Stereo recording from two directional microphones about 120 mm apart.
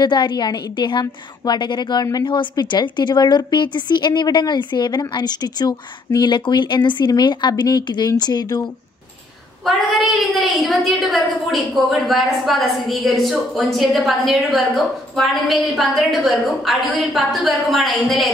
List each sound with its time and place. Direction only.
0.0 s a woman's voice: 40° left (ahead or behind)
9.7 s a woman's voice: centre (ahead or behind)